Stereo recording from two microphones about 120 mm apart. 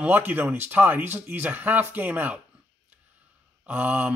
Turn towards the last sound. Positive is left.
turn(degrees=-10)  # may be behind; listen again after turning